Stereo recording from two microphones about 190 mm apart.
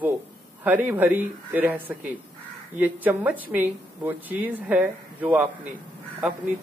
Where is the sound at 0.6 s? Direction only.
10° right (ahead or behind).